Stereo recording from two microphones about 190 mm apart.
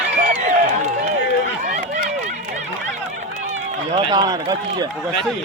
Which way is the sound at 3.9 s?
20° right (ahead or behind).